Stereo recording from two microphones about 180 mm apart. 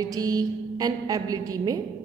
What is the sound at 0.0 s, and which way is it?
A woman's voice, 20° right (ahead or behind).